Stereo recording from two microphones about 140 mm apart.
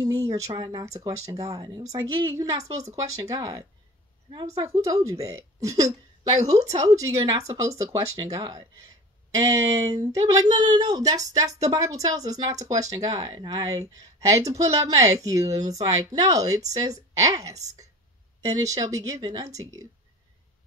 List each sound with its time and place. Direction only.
0.0 s a sound: 25° right (ahead or behind)
0.6 s speech: 30° right (ahead or behind)
4.6 s speech: 25° right (ahead or behind)